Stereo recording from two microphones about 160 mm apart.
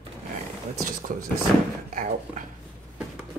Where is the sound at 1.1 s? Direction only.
55° right (ahead or behind).